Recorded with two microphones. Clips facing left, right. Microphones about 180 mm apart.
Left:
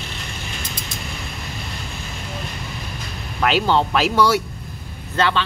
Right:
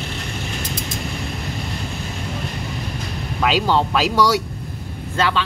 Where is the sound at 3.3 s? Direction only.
5° right (ahead or behind).